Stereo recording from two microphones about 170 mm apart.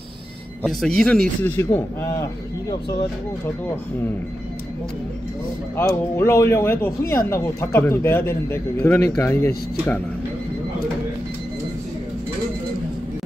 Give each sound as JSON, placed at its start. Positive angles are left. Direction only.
{"t": 0.6, "sound": "speech", "side_deg": 0}
{"t": 1.6, "sound": "speech", "side_deg": 15}
{"t": 5.8, "sound": "speech", "side_deg": 15}